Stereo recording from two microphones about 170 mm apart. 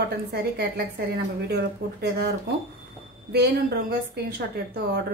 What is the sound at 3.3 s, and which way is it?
Speech, 70° right (ahead or behind).